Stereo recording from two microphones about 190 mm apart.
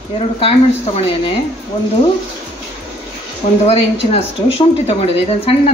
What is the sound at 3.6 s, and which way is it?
Speech, 30° left (ahead or behind).